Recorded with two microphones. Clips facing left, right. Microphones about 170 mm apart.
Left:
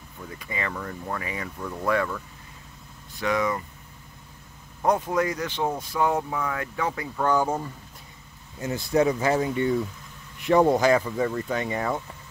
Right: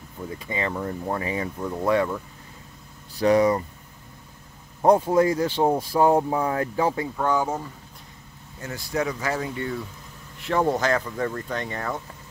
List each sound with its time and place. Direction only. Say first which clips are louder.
0.2 s speech: right 4 dB; 25° right (ahead or behind)
3.2 s speech: right 7 dB; 35° right (ahead or behind)
4.8 s speech: right 5 dB; 30° right (ahead or behind)
7.2 s speech: left 5 dB; centre (ahead or behind)
8.5 s speech: left 5 dB; 20° left (ahead or behind)